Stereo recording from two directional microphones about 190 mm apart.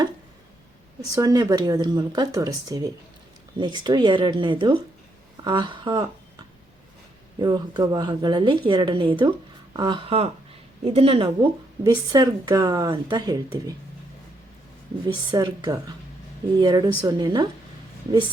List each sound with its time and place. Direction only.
1.1 s speech: 20° right (ahead or behind)
7.3 s speech: 20° right (ahead or behind)
15.0 s speech: 25° right (ahead or behind)